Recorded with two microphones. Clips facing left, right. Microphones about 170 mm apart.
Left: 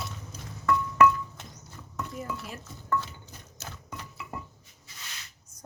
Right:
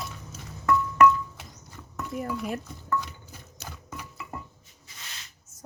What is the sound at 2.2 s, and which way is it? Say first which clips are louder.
Speech: right 10 dB; 60° right (ahead or behind).